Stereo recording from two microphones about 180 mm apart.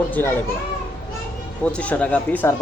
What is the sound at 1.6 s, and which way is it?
Speech, 5° left (ahead or behind).